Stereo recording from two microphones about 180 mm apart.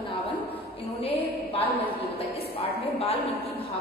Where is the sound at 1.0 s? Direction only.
30° left (ahead or behind).